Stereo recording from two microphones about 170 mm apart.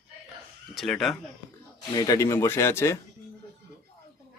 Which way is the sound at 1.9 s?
20° left (ahead or behind).